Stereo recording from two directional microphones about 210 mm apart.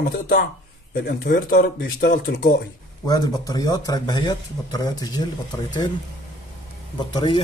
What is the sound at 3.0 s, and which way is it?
Speech, 15° left (ahead or behind).